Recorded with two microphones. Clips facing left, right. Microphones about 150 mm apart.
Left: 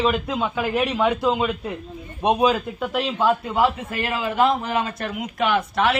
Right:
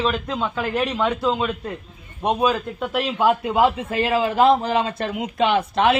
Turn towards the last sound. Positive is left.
turn(degrees=-25)  # may be behind; listen again after turning